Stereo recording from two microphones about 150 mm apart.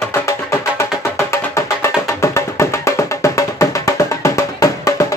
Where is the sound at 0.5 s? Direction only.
15° left (ahead or behind).